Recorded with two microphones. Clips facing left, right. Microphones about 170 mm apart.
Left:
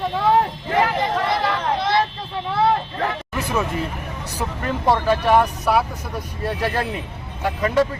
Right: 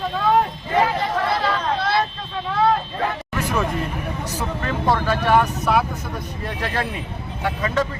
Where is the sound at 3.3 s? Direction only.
10° left (ahead or behind).